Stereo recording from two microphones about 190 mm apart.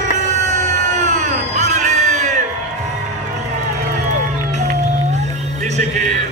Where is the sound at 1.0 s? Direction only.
40° right (ahead or behind).